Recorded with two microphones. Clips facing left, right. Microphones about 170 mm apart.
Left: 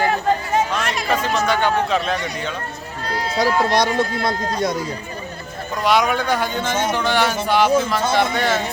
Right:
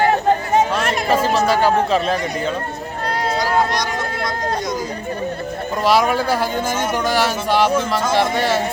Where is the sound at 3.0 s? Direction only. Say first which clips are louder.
Right 3 dB; 60° right (ahead or behind).